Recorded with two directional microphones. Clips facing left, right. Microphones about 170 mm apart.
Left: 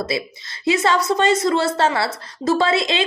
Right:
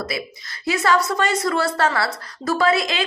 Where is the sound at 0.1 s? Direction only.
25° left (ahead or behind).